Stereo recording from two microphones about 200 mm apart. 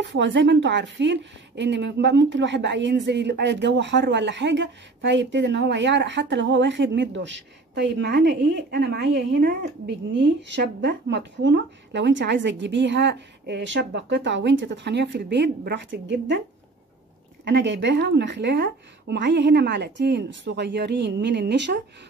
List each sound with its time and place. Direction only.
0.0 s speech: 65° right (ahead or behind)
17.5 s speech: 60° right (ahead or behind)